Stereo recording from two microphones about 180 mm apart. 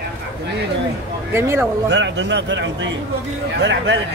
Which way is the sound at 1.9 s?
90° right.